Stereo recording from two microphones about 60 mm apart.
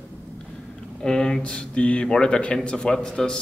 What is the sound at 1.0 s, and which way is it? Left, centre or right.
A man's voice, centre.